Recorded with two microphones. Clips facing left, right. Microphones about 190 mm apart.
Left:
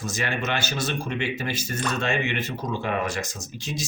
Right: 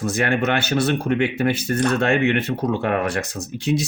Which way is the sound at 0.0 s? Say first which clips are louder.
Right 8 dB; 60° right (ahead or behind).